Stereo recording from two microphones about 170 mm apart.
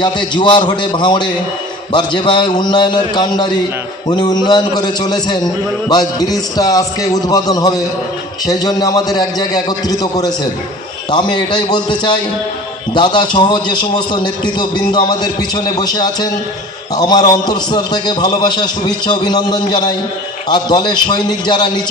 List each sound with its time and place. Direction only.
0.0 s a man's voice: 25° left (ahead or behind)